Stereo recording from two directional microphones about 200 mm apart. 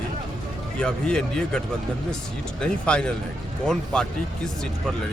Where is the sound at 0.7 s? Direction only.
5° left (ahead or behind).